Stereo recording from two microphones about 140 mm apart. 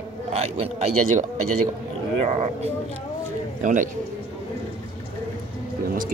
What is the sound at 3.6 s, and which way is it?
Speech, 65° right (ahead or behind).